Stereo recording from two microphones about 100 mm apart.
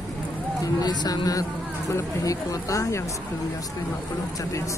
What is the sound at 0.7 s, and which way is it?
Speech, 45° left (ahead or behind).